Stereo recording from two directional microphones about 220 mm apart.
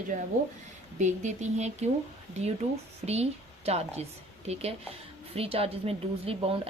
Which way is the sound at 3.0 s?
30° right (ahead or behind).